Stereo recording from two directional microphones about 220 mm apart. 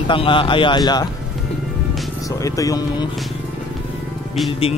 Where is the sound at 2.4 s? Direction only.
15° left (ahead or behind).